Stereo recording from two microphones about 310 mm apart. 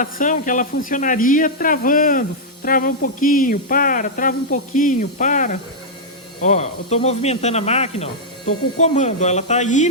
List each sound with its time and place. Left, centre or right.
0.0 s speech: left